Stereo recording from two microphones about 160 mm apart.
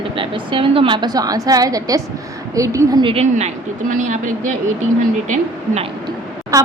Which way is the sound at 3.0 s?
40° right (ahead or behind).